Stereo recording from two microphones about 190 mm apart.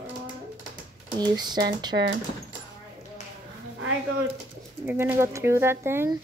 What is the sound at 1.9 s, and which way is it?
Speech, 50° right (ahead or behind).